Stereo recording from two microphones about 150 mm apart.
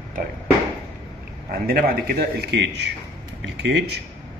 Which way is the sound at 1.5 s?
85° right.